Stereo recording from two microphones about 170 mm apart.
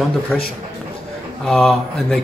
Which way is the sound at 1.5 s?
Centre (ahead or behind).